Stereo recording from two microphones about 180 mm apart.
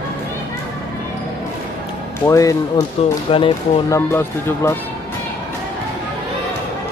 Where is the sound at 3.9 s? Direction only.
15° left (ahead or behind).